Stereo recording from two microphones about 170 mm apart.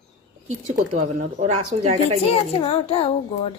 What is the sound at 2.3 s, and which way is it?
Speech, 35° left (ahead or behind).